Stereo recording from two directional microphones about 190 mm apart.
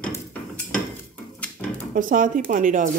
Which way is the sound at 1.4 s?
5° left (ahead or behind).